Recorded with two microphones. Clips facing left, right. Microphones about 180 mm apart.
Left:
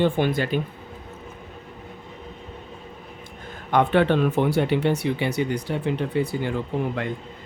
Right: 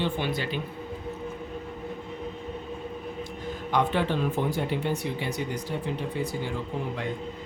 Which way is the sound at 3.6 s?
60° left (ahead or behind).